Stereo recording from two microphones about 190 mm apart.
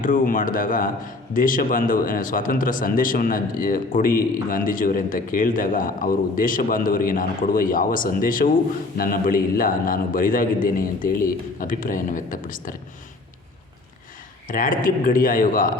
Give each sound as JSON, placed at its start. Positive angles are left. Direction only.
{"t": 0.0, "sound": "a man's voice", "side_deg": 45}
{"t": 14.4, "sound": "a man's voice", "side_deg": 45}